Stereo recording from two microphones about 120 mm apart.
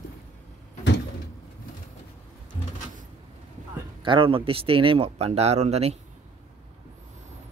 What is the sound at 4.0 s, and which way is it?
Speech, 45° right (ahead or behind).